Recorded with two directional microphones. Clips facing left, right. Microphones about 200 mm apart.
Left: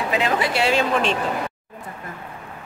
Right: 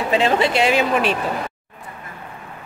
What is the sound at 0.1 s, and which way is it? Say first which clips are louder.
A woman's voice: right 5 dB; 30° right (ahead or behind).